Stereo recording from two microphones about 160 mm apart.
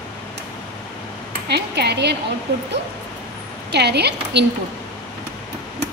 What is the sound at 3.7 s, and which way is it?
Speech, 90° right.